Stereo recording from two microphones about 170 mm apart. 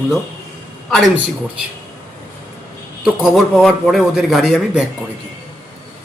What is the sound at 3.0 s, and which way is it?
A man's voice, centre (ahead or behind).